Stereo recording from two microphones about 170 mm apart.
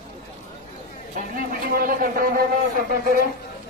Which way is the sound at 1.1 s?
60° right (ahead or behind).